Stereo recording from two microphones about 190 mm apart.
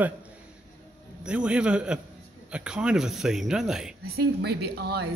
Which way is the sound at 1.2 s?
5° right (ahead or behind).